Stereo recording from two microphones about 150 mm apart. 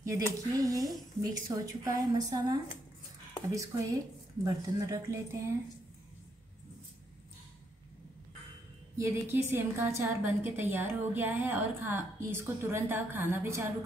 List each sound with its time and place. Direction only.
0.0 s speech: 20° right (ahead or behind)
8.9 s a woman's voice: 20° right (ahead or behind)